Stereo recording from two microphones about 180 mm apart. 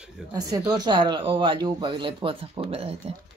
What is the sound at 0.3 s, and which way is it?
Speech, 20° right (ahead or behind).